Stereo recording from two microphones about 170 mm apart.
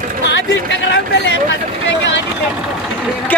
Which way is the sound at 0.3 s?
90° left.